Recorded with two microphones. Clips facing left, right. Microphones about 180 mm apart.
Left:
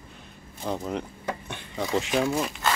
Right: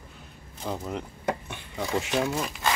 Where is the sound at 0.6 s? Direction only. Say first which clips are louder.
Left 3 dB; 5° right (ahead or behind).